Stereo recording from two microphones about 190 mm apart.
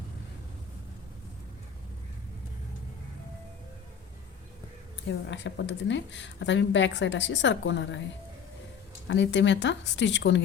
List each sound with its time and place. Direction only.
5.3 s a woman's voice: 70° left (ahead or behind)
9.0 s a woman's voice: 70° left (ahead or behind)